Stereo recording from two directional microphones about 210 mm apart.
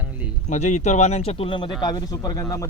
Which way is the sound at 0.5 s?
35° left (ahead or behind).